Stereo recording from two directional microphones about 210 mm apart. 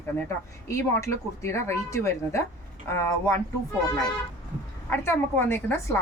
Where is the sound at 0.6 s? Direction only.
15° left (ahead or behind).